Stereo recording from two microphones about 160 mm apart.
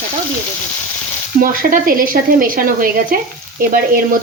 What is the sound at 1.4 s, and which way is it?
A woman's voice, 60° right (ahead or behind).